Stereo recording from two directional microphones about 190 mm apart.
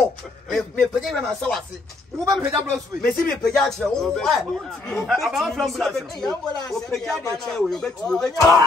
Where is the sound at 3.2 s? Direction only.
Centre (ahead or behind).